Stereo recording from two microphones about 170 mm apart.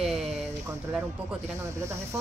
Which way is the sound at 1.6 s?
15° right (ahead or behind).